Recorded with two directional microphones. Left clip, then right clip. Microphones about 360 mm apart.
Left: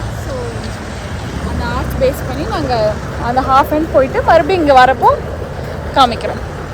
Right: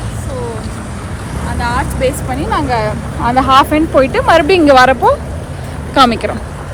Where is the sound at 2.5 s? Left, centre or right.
Right.